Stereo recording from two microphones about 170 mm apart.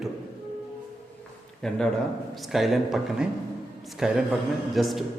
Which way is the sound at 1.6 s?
5° left (ahead or behind).